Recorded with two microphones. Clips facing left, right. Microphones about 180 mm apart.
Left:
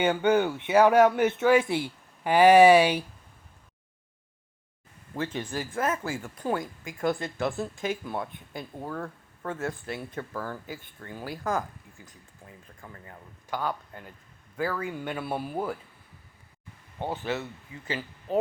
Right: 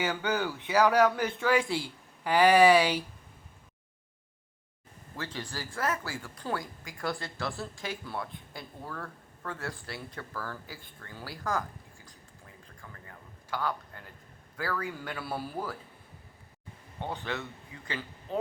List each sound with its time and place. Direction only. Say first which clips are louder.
0.0 s speech: left 7 dB; 25° left (ahead or behind)
5.1 s speech: left 7 dB; 20° left (ahead or behind)
12.8 s a man's voice: left 4 dB; 20° left (ahead or behind)